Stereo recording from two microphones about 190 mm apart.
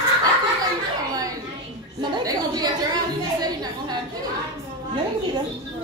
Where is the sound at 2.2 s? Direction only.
20° right (ahead or behind).